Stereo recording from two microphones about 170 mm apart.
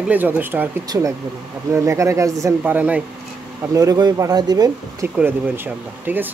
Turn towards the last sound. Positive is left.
turn(degrees=-10)  # may be behind; listen again after turning